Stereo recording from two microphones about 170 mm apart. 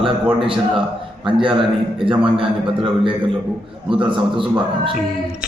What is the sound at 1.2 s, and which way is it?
A man's voice, 30° right (ahead or behind).